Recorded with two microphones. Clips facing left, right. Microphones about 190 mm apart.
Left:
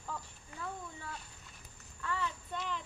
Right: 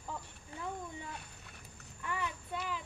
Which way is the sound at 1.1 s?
65° right (ahead or behind).